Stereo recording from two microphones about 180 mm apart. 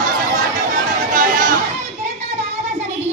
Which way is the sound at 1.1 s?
45° right (ahead or behind).